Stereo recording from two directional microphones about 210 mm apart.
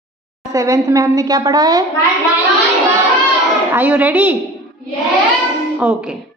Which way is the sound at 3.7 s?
10° right (ahead or behind).